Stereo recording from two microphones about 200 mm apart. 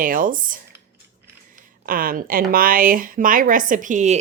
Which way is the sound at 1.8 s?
45° right (ahead or behind).